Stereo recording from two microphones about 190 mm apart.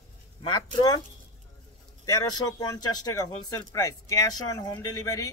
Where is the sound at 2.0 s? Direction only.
20° left (ahead or behind).